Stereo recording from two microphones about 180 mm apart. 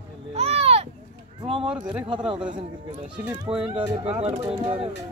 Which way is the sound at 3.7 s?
30° right (ahead or behind).